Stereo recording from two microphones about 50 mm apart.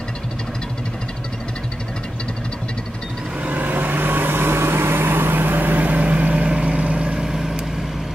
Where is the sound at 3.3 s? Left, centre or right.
Right; by 7.9 s centre.